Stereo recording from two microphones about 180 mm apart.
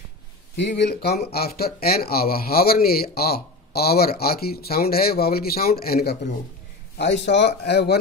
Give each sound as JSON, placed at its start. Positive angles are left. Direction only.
{"t": 0.6, "sound": "speech", "side_deg": 70}
{"t": 7.0, "sound": "speech", "side_deg": 80}